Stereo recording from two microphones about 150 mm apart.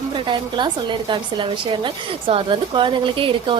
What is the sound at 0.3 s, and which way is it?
A woman's voice, 30° right (ahead or behind).